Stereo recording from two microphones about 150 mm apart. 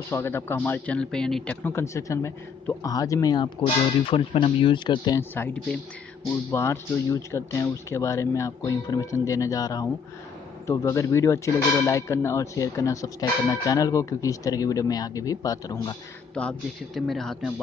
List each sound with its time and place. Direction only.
0.1 s a man's voice: 15° left (ahead or behind)
5.3 s a man's voice: 15° left (ahead or behind)
16.3 s a man's voice: 5° left (ahead or behind)